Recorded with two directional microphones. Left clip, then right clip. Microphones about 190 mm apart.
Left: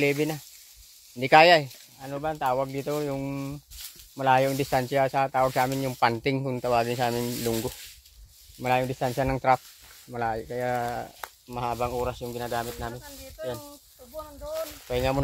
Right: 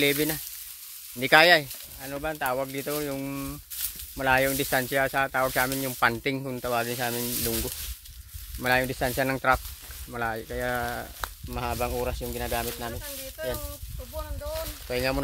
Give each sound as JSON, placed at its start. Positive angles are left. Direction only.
{"t": 0.0, "sound": "speech", "side_deg": -5}
{"t": 1.2, "sound": "speech", "side_deg": 10}
{"t": 8.6, "sound": "speech", "side_deg": 0}
{"t": 14.9, "sound": "speech", "side_deg": 10}